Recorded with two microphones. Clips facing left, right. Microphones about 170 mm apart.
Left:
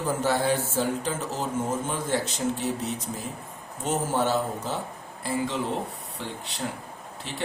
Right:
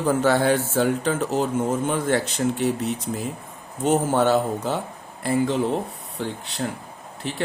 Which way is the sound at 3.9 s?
65° right (ahead or behind).